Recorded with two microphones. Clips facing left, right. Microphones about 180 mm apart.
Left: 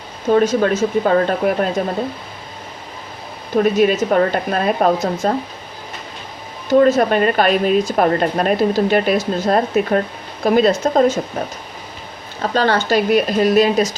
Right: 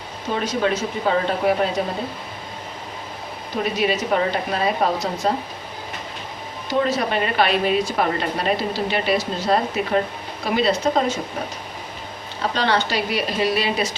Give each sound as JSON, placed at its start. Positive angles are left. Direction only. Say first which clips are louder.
{"t": 0.3, "sound": "speech", "louder": "left 7 dB", "side_deg": 45}
{"t": 3.6, "sound": "speech", "louder": "left 7 dB", "side_deg": 45}
{"t": 6.7, "sound": "speech", "louder": "left 9 dB", "side_deg": 50}
{"t": 12.4, "sound": "speech", "louder": "left 4 dB", "side_deg": 45}